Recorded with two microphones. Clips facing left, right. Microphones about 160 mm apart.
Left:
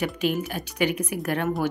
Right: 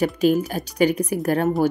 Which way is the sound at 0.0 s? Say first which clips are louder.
Right 7 dB; 40° right (ahead or behind).